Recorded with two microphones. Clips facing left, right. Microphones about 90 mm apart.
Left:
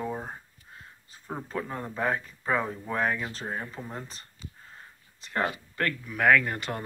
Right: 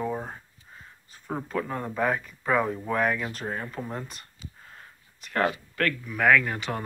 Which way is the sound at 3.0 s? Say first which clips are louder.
Right 2 dB; 25° left (ahead or behind).